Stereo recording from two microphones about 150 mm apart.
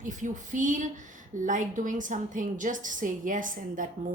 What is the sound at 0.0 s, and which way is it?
A woman's voice, 55° right (ahead or behind).